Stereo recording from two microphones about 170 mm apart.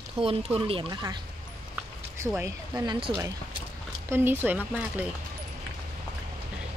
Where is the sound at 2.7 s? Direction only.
25° right (ahead or behind).